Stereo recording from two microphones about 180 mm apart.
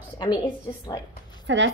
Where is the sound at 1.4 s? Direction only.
90° right.